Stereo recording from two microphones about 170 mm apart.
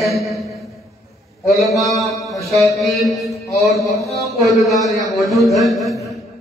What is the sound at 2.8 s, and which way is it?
Speech, centre (ahead or behind).